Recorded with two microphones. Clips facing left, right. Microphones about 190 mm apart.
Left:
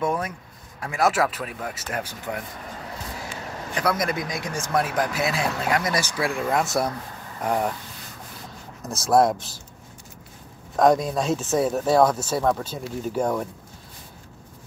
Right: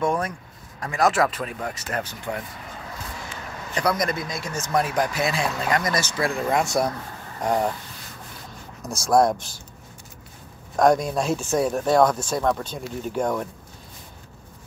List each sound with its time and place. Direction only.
0.0 s speech: 5° left (ahead or behind)
3.7 s speech: 5° left (ahead or behind)
4.2 s speech: 15° left (ahead or behind)
4.9 s speech: 5° left (ahead or behind)
8.8 s speech: 5° left (ahead or behind)
10.8 s speech: centre (ahead or behind)